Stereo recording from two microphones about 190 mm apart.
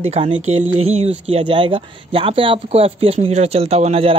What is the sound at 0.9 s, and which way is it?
Speech, 35° right (ahead or behind).